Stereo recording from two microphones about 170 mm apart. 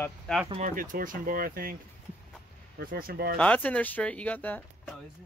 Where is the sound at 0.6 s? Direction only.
50° right (ahead or behind).